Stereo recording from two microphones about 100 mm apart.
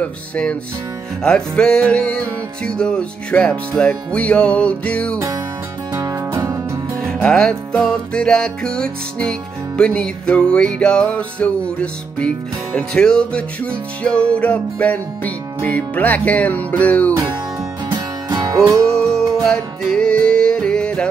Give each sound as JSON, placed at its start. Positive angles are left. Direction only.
{"t": 0.0, "sound": "music", "side_deg": 10}
{"t": 5.9, "sound": "music", "side_deg": -30}
{"t": 7.1, "sound": "music", "side_deg": 5}
{"t": 17.8, "sound": "music", "side_deg": -45}
{"t": 19.4, "sound": "music", "side_deg": 5}